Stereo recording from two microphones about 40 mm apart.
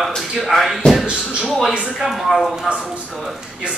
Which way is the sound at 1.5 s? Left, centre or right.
Centre.